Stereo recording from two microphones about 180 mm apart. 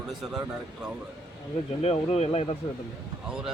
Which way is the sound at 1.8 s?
35° left (ahead or behind).